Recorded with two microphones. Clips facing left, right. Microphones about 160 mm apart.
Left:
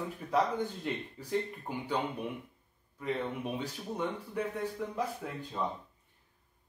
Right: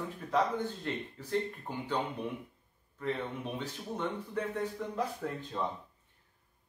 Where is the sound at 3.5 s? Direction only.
10° left (ahead or behind).